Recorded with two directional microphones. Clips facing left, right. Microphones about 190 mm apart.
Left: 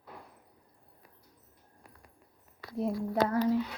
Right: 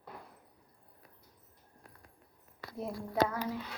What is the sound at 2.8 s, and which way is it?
Speech, 35° left (ahead or behind).